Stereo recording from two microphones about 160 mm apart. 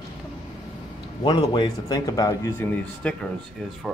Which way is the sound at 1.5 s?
25° left (ahead or behind).